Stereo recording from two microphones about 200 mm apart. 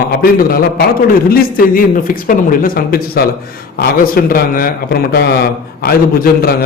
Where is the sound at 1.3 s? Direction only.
45° left (ahead or behind).